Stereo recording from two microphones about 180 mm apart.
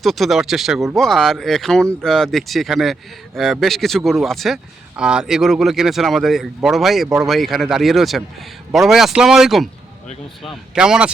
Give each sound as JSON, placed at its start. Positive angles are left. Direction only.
{"t": 0.0, "sound": "a man's voice", "side_deg": 0}